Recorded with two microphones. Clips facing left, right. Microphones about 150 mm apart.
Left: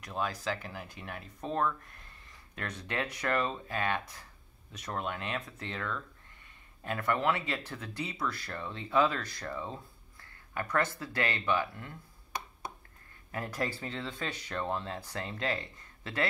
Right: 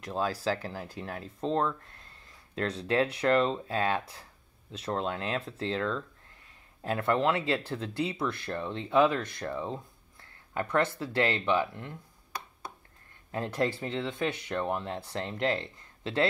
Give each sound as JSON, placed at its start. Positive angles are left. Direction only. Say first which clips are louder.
{"t": 0.0, "sound": "speech", "louder": "right 4 dB", "side_deg": -30}
{"t": 13.3, "sound": "speech", "louder": "right 5 dB", "side_deg": -25}